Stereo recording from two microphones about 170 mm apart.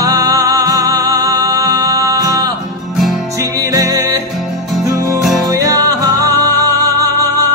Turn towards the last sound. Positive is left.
turn(degrees=-20)  # may be behind; listen again after turning